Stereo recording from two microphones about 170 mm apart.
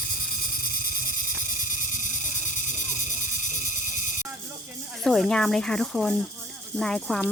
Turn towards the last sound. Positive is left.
turn(degrees=0)  # may be behind; listen again after turning